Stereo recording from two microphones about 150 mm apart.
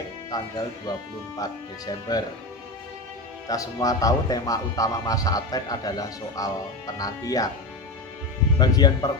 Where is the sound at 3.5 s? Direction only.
25° left (ahead or behind).